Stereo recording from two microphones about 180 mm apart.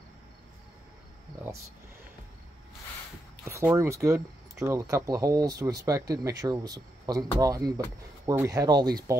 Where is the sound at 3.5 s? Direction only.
15° right (ahead or behind).